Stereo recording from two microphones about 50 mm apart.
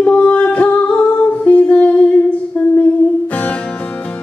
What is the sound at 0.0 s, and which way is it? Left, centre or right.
Music, left.